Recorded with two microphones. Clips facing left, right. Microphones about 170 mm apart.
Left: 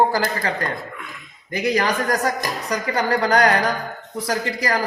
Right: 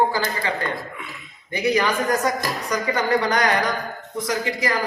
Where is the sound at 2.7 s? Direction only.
35° left (ahead or behind).